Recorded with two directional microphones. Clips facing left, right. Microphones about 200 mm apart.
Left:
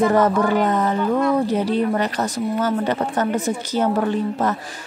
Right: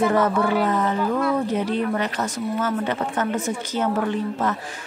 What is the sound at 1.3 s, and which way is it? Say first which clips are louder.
A woman's voice: left 3 dB; 35° left (ahead or behind).